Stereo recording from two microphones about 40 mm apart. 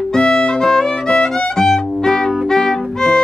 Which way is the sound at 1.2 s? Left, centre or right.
Centre.